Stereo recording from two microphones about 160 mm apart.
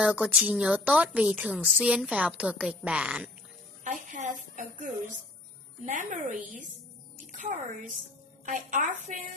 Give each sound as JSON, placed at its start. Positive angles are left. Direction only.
{"t": 0.0, "sound": "a woman's voice", "side_deg": -5}
{"t": 3.8, "sound": "a woman's voice", "side_deg": -50}